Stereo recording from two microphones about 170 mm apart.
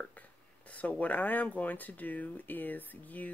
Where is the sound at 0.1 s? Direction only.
10° left (ahead or behind).